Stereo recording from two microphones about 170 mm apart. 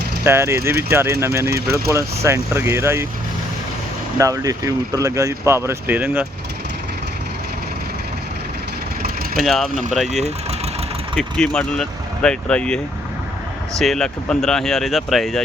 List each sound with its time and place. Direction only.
0.3 s speech: 15° right (ahead or behind)
4.2 s speech: 20° right (ahead or behind)
9.4 s speech: centre (ahead or behind)
11.2 s speech: 5° left (ahead or behind)